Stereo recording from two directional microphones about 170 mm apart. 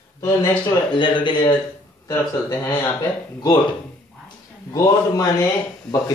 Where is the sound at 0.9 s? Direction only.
30° left (ahead or behind).